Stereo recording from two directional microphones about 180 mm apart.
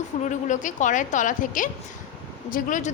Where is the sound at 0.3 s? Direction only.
40° left (ahead or behind).